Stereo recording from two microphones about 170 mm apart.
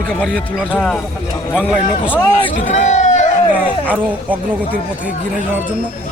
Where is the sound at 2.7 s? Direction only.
45° left (ahead or behind).